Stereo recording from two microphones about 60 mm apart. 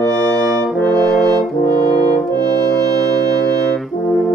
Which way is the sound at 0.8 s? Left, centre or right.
Centre.